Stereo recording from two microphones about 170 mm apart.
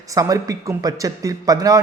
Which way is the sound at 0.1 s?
20° right (ahead or behind).